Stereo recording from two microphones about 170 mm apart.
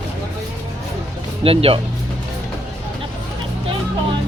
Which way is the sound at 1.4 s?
35° right (ahead or behind).